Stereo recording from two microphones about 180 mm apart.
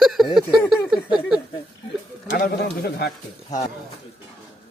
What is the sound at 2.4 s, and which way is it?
Speech, 55° left (ahead or behind).